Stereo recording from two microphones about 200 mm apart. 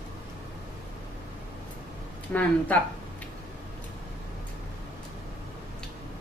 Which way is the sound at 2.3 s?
5° left (ahead or behind).